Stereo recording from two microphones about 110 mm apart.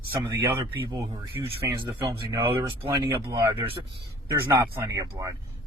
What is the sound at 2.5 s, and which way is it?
Speech, 50° right (ahead or behind).